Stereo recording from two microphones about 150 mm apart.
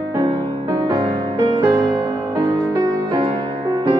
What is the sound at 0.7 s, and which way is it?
Music, 30° right (ahead or behind).